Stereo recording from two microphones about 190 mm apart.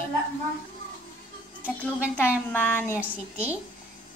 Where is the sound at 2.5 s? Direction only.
10° left (ahead or behind).